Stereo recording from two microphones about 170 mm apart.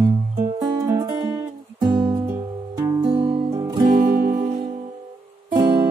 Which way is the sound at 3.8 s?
55° right (ahead or behind).